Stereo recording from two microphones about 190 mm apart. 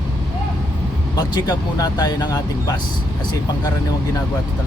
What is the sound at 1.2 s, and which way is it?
Speech, 20° left (ahead or behind).